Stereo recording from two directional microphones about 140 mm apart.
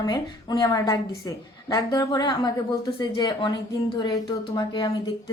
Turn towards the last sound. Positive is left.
turn(degrees=30)  # may be behind; listen again after turning